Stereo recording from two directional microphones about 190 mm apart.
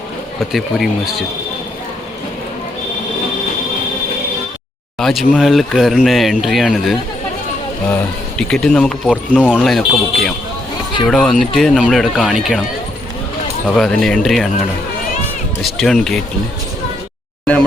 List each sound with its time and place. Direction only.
0.3 s speech: centre (ahead or behind)
4.9 s speech: centre (ahead or behind)
8.4 s speech: 5° left (ahead or behind)
13.7 s speech: centre (ahead or behind)
15.6 s speech: centre (ahead or behind)
17.4 s a sound: 5° left (ahead or behind)